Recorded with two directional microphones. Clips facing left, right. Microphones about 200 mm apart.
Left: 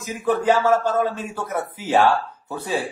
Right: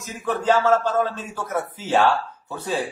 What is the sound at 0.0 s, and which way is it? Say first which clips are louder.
Speech: left 4 dB; 10° left (ahead or behind).